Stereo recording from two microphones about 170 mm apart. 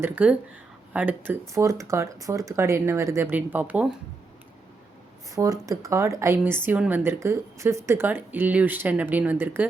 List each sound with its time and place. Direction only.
0.0 s a woman's voice: 10° right (ahead or behind)
5.3 s a woman's voice: 20° right (ahead or behind)